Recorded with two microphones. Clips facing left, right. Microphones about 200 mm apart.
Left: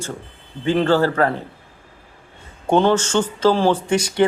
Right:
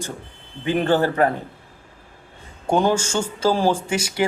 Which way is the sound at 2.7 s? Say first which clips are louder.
Left 3 dB; 10° right (ahead or behind).